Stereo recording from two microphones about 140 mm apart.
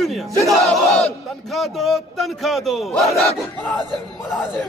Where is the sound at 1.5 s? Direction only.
Centre (ahead or behind).